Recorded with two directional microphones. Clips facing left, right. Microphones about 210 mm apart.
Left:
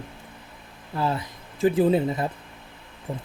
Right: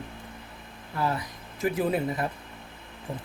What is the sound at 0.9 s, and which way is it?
Speech, 25° left (ahead or behind).